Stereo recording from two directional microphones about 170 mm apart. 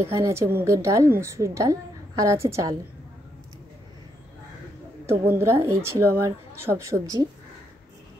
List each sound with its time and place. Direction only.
0.0 s a woman's voice: 15° right (ahead or behind)
5.0 s a woman's voice: 15° right (ahead or behind)